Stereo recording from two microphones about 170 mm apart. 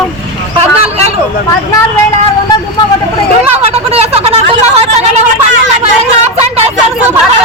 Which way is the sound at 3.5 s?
35° right (ahead or behind).